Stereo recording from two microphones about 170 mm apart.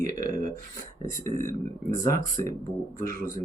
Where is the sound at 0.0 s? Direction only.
50° right (ahead or behind).